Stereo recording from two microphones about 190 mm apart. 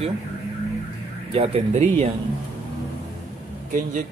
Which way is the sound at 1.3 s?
30° right (ahead or behind).